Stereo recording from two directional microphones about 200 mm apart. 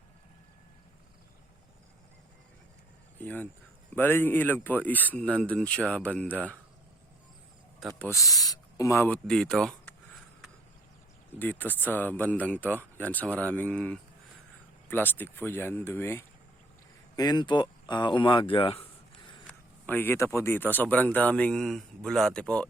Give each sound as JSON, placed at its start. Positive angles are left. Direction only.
{"t": 3.2, "sound": "speech", "side_deg": 10}
{"t": 7.9, "sound": "speech", "side_deg": 10}
{"t": 11.3, "sound": "speech", "side_deg": 10}
{"t": 19.5, "sound": "speech", "side_deg": 10}